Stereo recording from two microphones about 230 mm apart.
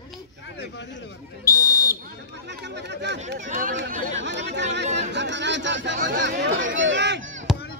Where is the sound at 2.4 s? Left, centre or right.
Right.